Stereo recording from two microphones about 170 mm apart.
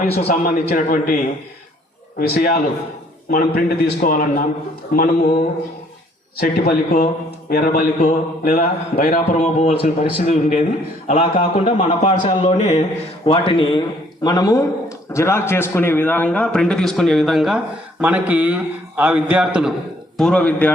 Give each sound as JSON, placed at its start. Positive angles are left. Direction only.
{"t": 0.4, "sound": "a man's voice", "side_deg": 55}
{"t": 7.9, "sound": "a sound", "side_deg": 45}
{"t": 8.5, "sound": "a man's voice", "side_deg": 60}
{"t": 9.1, "sound": "speech", "side_deg": 40}
{"t": 11.3, "sound": "a sound", "side_deg": 50}
{"t": 11.8, "sound": "speech", "side_deg": 35}
{"t": 12.4, "sound": "a sound", "side_deg": 40}
{"t": 13.2, "sound": "a man's voice", "side_deg": 35}
{"t": 20.1, "sound": "a man's voice", "side_deg": 5}